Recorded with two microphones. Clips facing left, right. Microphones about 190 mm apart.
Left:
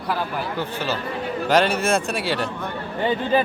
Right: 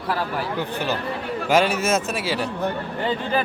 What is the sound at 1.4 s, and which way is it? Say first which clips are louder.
A man's voice: even; 5° right (ahead or behind).